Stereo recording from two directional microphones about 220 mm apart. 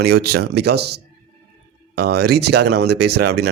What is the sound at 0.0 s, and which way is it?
Speech, 45° right (ahead or behind).